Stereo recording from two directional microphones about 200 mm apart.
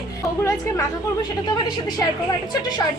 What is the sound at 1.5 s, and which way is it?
Speech, 20° left (ahead or behind).